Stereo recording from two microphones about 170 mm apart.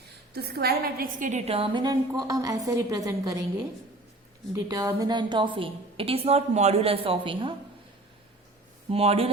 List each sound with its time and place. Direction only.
0.3 s a woman's voice: 65° right (ahead or behind)
1.3 s a woman's voice: 40° right (ahead or behind); by 3.4 s 20° right (ahead or behind)
4.5 s a woman's voice: 20° right (ahead or behind)
8.9 s a woman's voice: 35° right (ahead or behind)